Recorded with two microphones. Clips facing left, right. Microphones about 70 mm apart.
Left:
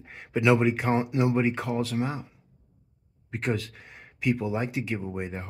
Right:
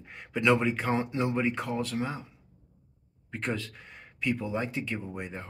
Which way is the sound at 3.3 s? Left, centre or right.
Centre.